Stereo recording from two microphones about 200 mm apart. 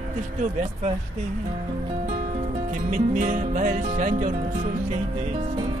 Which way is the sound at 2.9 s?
40° right (ahead or behind).